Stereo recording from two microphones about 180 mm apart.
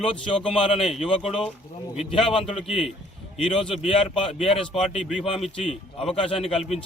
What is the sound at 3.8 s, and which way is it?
Speech, 30° left (ahead or behind).